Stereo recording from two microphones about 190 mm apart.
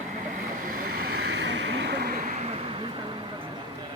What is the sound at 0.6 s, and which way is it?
Vehicle, 50° right (ahead or behind).